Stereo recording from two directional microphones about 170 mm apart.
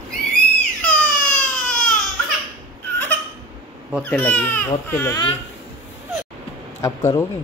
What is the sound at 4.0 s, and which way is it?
Speech, 10° left (ahead or behind).